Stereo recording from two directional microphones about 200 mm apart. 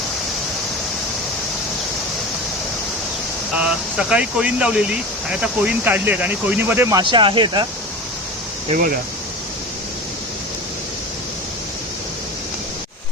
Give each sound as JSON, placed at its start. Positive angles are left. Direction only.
{"t": 3.6, "sound": "speech", "side_deg": -5}